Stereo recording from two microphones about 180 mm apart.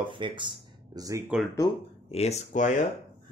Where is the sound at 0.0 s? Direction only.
30° right (ahead or behind).